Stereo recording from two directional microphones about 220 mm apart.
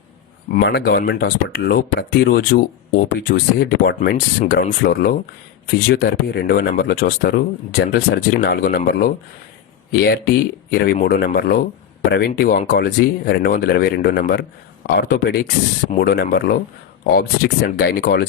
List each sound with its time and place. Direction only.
0.6 s speech: 45° left (ahead or behind)
10.7 s speech: 40° left (ahead or behind)